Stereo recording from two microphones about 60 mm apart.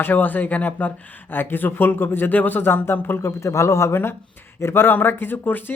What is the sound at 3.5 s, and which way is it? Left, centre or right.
A man's voice, left.